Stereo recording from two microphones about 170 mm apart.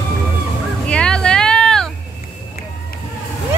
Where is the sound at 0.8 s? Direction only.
5° left (ahead or behind).